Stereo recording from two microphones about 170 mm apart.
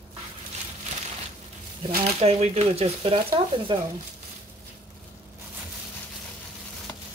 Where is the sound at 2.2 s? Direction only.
40° right (ahead or behind).